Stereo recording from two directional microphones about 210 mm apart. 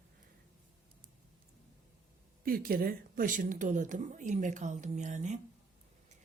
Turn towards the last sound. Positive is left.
turn(degrees=-35)  # may be behind; listen again after turning